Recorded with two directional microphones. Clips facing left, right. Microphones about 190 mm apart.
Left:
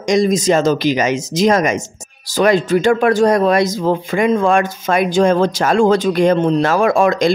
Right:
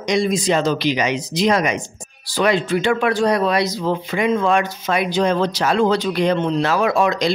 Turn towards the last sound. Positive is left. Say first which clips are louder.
# left 4 dB
turn(degrees=50)  # may be behind; listen again after turning